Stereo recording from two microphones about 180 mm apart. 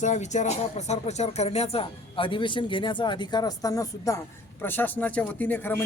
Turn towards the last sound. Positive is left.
turn(degrees=10)  # may be behind; listen again after turning